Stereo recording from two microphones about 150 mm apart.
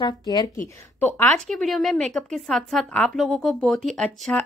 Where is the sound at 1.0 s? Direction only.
15° left (ahead or behind).